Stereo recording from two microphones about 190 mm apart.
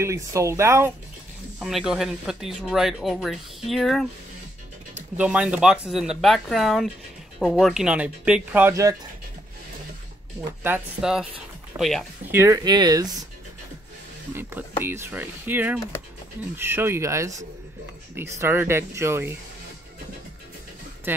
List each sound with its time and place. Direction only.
0.0 s speech: 15° right (ahead or behind)
1.6 s speech: centre (ahead or behind)
5.1 s speech: 5° right (ahead or behind)
10.6 s speech: 5° right (ahead or behind)
12.3 s speech: 15° right (ahead or behind)
14.3 s speech: 10° right (ahead or behind)
18.4 s speech: 10° right (ahead or behind)